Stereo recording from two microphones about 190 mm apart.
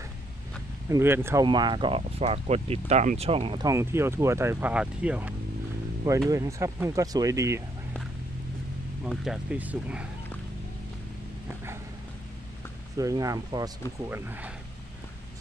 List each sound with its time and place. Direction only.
0.8 s speech: 15° right (ahead or behind); by 3.6 s 30° right (ahead or behind)
3.6 s speech: 15° right (ahead or behind)
9.0 s speech: centre (ahead or behind)
12.9 s speech: 15° right (ahead or behind)